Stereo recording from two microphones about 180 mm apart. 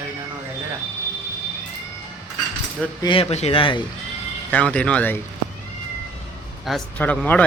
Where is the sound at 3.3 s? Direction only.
35° left (ahead or behind).